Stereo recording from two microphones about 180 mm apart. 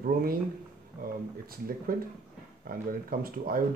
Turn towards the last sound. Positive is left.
turn(degrees=-55)  # may be behind; listen again after turning